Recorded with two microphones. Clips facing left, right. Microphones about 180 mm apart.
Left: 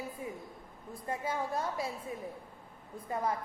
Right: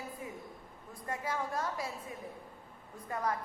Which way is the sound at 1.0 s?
25° left (ahead or behind).